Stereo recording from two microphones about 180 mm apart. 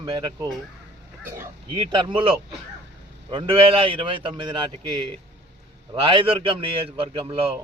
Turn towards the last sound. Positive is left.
turn(degrees=-30)  # may be behind; listen again after turning